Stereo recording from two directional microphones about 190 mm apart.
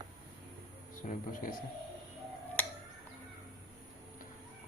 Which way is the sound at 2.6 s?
10° left (ahead or behind).